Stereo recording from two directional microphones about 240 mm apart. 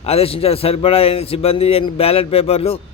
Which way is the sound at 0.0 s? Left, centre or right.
Left.